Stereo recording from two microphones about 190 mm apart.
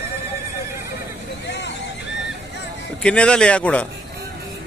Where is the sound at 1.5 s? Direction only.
65° left (ahead or behind).